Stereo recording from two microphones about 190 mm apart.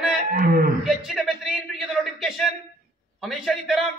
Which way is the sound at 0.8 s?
Centre (ahead or behind).